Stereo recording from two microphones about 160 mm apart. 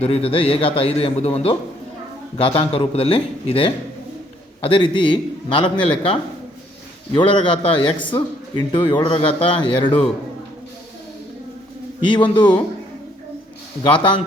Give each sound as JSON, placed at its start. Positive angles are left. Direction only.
{"t": 0.0, "sound": "a man's voice", "side_deg": 35}
{"t": 2.6, "sound": "a man's voice", "side_deg": 35}
{"t": 12.1, "sound": "a man's voice", "side_deg": 30}
{"t": 13.8, "sound": "a man's voice", "side_deg": 30}